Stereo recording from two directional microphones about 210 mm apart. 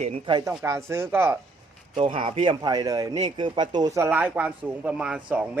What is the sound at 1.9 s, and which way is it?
Speech, 25° right (ahead or behind).